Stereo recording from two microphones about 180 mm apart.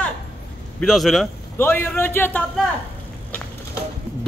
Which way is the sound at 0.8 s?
Centre (ahead or behind).